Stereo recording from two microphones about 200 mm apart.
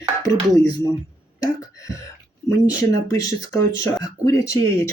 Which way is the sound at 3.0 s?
15° left (ahead or behind).